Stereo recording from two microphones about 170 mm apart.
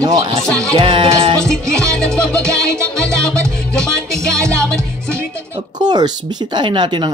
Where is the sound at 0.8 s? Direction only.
35° right (ahead or behind).